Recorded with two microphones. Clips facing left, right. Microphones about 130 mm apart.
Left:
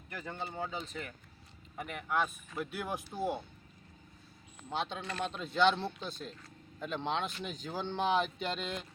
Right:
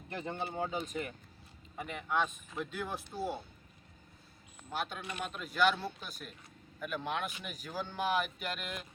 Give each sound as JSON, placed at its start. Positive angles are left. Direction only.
{"t": 0.1, "sound": "speech", "side_deg": -25}
{"t": 1.7, "sound": "speech", "side_deg": 0}
{"t": 4.7, "sound": "speech", "side_deg": 25}